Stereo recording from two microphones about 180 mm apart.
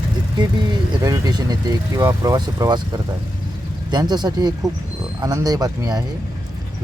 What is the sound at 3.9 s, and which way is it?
Speech, 25° right (ahead or behind).